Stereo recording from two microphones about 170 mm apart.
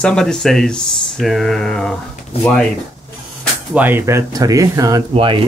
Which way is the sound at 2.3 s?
35° left (ahead or behind).